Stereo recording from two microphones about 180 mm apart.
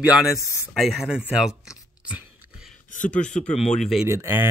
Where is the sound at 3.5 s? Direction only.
40° left (ahead or behind).